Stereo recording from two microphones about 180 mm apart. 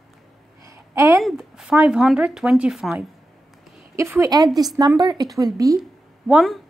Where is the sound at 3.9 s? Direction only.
15° right (ahead or behind).